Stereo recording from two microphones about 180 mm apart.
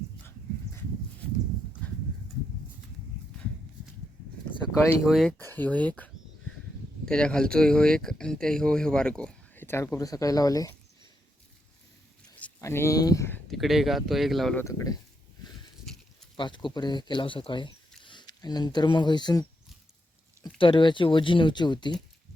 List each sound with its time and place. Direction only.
5.0 s speech: centre (ahead or behind)
5.4 s speech: 10° left (ahead or behind)
12.4 s speech: 15° left (ahead or behind)
13.5 s speech: centre (ahead or behind)
14.6 s speech: 15° left (ahead or behind)
16.4 s speech: 25° left (ahead or behind)
20.6 s speech: 30° left (ahead or behind)